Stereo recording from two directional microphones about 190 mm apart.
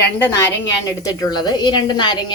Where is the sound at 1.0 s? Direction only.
20° left (ahead or behind).